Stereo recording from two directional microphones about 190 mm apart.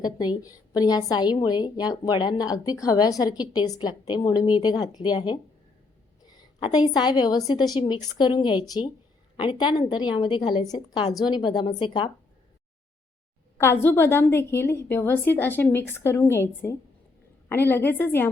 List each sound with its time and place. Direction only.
0.0 s a woman's voice: 20° left (ahead or behind)
13.6 s a woman's voice: 10° left (ahead or behind)